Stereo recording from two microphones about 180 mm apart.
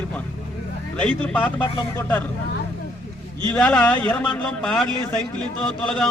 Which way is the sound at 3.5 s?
5° left (ahead or behind).